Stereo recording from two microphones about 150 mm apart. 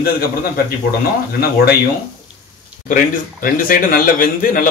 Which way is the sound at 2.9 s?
65° left (ahead or behind).